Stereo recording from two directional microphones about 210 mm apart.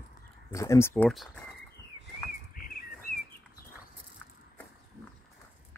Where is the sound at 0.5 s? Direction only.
15° left (ahead or behind).